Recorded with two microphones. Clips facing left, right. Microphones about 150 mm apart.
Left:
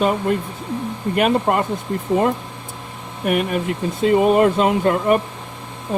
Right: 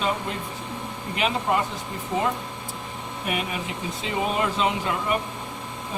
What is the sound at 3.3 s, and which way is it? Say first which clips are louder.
Speech: left 10 dB; 55° left (ahead or behind).